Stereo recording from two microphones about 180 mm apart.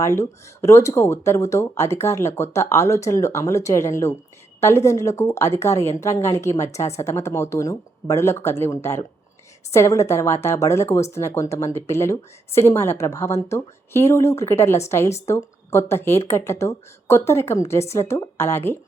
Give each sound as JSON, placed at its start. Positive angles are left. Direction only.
{"t": 0.0, "sound": "speech", "side_deg": 15}